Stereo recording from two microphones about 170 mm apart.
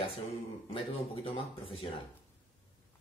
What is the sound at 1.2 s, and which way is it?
Speech, 30° left (ahead or behind).